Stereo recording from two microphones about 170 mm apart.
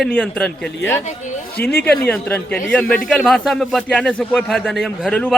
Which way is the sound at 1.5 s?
10° left (ahead or behind).